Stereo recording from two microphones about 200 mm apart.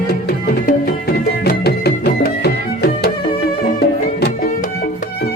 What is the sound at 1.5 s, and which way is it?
Music, 55° left (ahead or behind).